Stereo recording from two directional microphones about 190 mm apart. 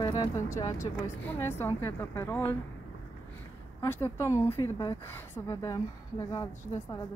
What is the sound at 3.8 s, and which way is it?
A woman's voice, 10° left (ahead or behind).